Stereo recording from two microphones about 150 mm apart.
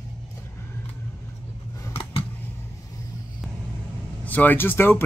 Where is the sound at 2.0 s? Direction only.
40° left (ahead or behind).